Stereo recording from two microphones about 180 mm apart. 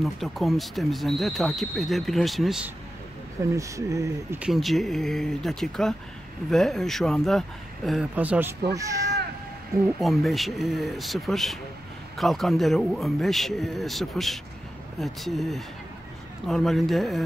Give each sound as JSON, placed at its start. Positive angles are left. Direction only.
{"t": 0.0, "sound": "speech", "side_deg": 0}
{"t": 3.5, "sound": "speech", "side_deg": -15}
{"t": 4.4, "sound": "speech", "side_deg": 0}
{"t": 9.9, "sound": "speech", "side_deg": 0}